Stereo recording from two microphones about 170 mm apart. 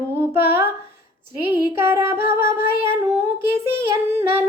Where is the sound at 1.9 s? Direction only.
15° right (ahead or behind).